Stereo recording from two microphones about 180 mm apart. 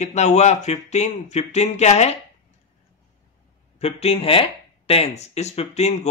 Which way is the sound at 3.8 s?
35° left (ahead or behind).